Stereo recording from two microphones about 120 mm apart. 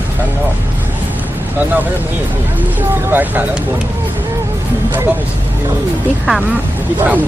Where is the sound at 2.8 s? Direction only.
15° right (ahead or behind).